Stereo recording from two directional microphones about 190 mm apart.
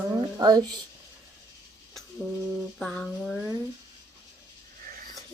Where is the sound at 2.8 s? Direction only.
5° left (ahead or behind).